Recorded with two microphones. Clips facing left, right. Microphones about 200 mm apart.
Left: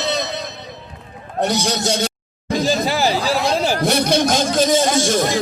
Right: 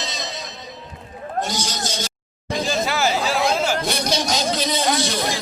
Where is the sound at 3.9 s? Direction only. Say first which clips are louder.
Left 6 dB; 55° left (ahead or behind).